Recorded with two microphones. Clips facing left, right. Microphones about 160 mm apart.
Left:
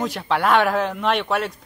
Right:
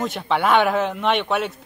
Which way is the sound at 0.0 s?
Centre (ahead or behind).